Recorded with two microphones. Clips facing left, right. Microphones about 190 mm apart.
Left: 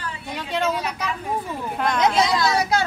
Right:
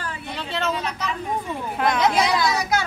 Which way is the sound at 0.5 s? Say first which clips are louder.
Left 2 dB; 10° left (ahead or behind).